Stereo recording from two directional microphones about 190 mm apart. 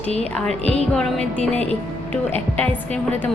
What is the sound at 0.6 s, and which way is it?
Music, 35° left (ahead or behind).